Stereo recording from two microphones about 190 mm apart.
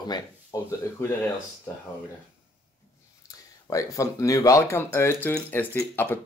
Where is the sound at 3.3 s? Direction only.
15° left (ahead or behind).